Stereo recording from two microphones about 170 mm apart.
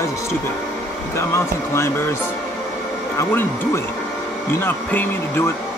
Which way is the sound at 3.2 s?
15° left (ahead or behind).